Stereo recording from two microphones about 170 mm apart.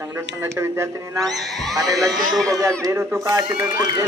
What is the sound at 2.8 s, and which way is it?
A man's voice, 15° right (ahead or behind).